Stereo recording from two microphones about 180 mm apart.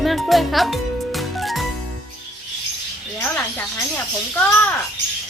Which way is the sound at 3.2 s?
10° left (ahead or behind).